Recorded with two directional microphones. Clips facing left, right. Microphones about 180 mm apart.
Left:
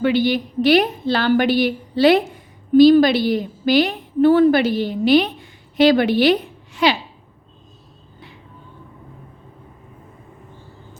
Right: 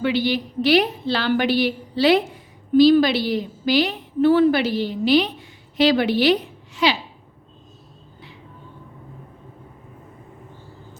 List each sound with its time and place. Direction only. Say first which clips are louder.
0.0 s a woman's voice: left 4 dB; 50° left (ahead or behind)